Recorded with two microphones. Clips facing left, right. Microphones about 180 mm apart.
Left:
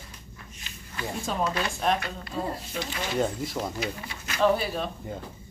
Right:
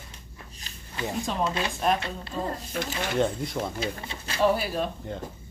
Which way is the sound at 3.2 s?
Centre (ahead or behind).